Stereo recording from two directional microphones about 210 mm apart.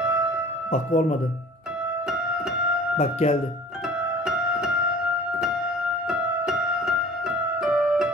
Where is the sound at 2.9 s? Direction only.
30° left (ahead or behind).